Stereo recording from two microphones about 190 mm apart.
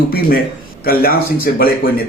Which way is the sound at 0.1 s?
55° left (ahead or behind).